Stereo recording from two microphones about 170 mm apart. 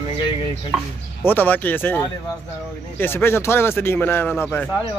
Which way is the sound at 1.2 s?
10° left (ahead or behind).